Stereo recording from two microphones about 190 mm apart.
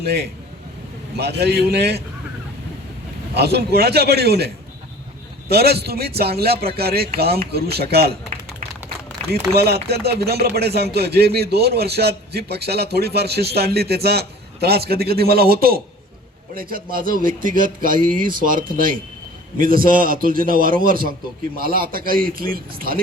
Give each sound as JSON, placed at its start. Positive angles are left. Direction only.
{"t": 0.0, "sound": "a man's voice", "side_deg": -60}
{"t": 3.3, "sound": "a man's voice", "side_deg": -60}